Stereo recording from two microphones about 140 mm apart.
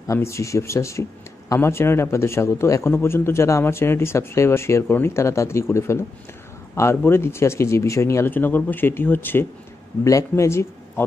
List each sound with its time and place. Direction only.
0.0 s a man's voice: 20° left (ahead or behind)